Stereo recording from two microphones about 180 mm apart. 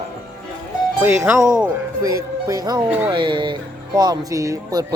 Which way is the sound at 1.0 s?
10° right (ahead or behind).